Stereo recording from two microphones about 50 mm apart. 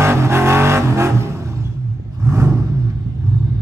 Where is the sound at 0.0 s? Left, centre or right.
Right.